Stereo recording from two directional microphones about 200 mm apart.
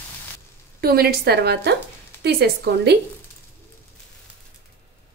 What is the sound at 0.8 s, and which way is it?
A woman's voice, 50° right (ahead or behind).